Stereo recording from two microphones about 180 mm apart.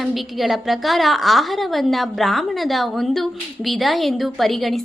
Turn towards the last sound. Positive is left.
turn(degrees=0)  # may be behind; listen again after turning